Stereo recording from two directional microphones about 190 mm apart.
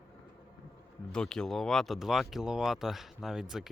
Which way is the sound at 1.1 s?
5° left (ahead or behind).